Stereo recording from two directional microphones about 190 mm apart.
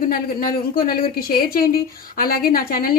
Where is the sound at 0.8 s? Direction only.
50° left (ahead or behind).